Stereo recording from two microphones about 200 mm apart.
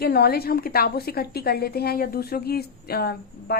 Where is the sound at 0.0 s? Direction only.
50° left (ahead or behind).